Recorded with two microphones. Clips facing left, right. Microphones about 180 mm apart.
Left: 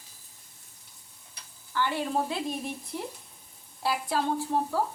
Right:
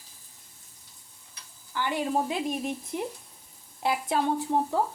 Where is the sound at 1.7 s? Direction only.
15° right (ahead or behind).